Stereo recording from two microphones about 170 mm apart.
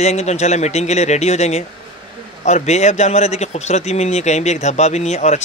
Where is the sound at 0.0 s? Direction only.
40° left (ahead or behind).